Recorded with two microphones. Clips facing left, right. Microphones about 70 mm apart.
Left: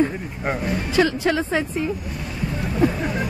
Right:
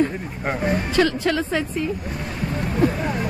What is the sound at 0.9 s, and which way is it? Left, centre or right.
Speech, centre.